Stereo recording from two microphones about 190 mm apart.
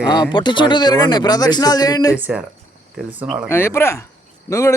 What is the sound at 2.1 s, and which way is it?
Speech, 10° right (ahead or behind).